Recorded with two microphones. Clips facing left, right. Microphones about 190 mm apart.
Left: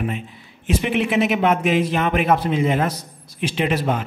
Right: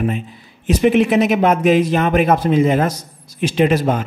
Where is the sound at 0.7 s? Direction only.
40° right (ahead or behind).